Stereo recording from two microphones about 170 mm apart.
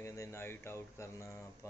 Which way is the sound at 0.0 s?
15° left (ahead or behind).